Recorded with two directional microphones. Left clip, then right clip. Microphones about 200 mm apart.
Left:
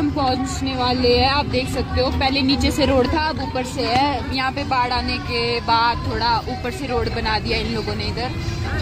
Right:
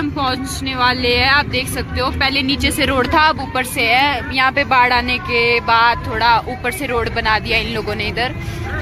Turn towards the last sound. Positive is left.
turn(degrees=10)  # may be behind; listen again after turning